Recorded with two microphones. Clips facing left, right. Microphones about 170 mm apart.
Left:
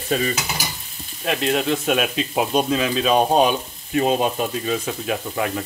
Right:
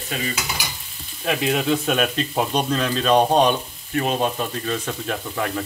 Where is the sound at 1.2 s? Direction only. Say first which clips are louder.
Even; centre (ahead or behind).